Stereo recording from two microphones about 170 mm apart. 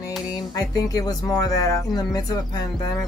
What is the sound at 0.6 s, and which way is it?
Speech, 20° left (ahead or behind).